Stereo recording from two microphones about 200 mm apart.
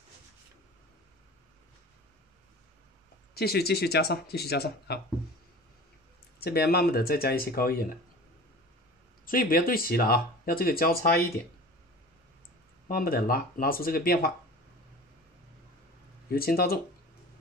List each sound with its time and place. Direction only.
3.3 s speech: 50° left (ahead or behind)
6.4 s speech: 50° left (ahead or behind)
9.2 s speech: 45° left (ahead or behind)
12.8 s speech: 45° left (ahead or behind)
16.3 s speech: 50° left (ahead or behind)